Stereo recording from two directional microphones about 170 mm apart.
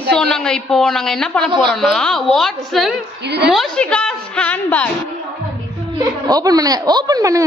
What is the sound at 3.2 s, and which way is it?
Speech, 80° right.